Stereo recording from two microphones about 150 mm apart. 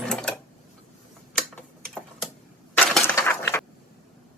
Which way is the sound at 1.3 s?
5° left (ahead or behind).